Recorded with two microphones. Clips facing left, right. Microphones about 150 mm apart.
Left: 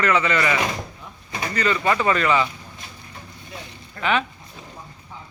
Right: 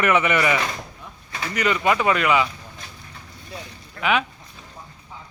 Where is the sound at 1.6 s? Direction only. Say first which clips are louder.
Right 1 dB; 15° right (ahead or behind).